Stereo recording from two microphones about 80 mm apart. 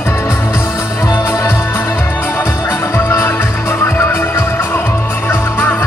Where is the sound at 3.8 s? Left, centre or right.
Left.